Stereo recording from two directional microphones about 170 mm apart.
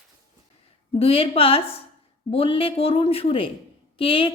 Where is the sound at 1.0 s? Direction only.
35° left (ahead or behind).